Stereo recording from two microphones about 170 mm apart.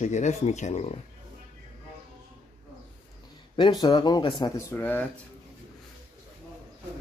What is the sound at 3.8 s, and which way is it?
Speech, 25° left (ahead or behind).